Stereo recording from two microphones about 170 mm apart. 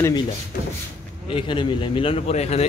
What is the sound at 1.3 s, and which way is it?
Speech, 30° left (ahead or behind).